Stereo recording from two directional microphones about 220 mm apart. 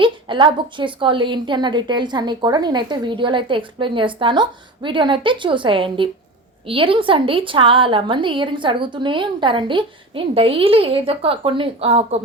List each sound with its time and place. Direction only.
0.0 s a woman's voice: 20° right (ahead or behind)